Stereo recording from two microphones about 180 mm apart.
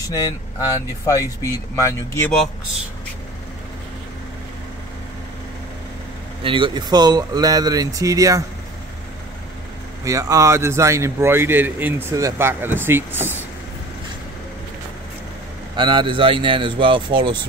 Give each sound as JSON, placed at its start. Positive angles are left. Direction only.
{"t": 0.1, "sound": "speech", "side_deg": 20}
{"t": 6.4, "sound": "speech", "side_deg": -30}
{"t": 10.0, "sound": "a man's voice", "side_deg": -15}
{"t": 15.7, "sound": "speech", "side_deg": -25}